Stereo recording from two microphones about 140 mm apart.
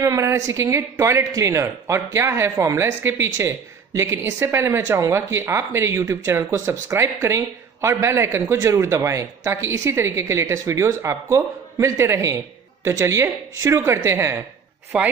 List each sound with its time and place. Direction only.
0.0 s a woman's voice: 20° right (ahead or behind)
14.9 s speech: 5° right (ahead or behind)